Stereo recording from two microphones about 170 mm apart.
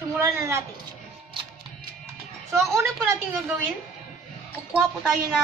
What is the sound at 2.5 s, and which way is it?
Speech, 15° right (ahead or behind).